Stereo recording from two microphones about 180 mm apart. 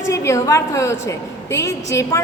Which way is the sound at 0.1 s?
15° left (ahead or behind).